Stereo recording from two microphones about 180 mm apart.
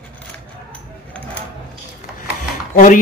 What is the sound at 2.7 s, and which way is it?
Speech, 45° left (ahead or behind).